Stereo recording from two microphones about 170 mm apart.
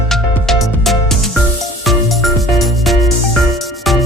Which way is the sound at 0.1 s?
Centre (ahead or behind).